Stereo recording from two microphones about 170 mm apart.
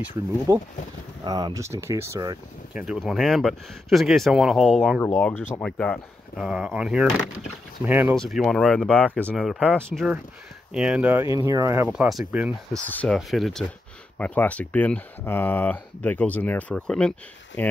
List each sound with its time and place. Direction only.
0.5 s speech: 15° right (ahead or behind)
2.7 s speech: 5° right (ahead or behind)
8.1 s speech: centre (ahead or behind); by 11.9 s 15° right (ahead or behind)
11.9 s speech: centre (ahead or behind)
12.8 s speech: 10° left (ahead or behind)